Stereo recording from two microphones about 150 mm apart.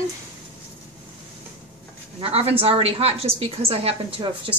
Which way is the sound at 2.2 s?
40° right (ahead or behind).